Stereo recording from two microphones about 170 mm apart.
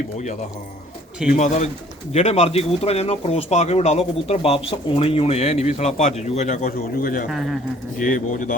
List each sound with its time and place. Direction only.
1.4 s speech: 40° left (ahead or behind)
7.3 s speech: centre (ahead or behind)
7.9 s speech: 55° left (ahead or behind)